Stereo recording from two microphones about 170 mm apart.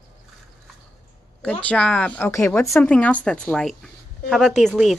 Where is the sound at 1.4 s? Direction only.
10° left (ahead or behind).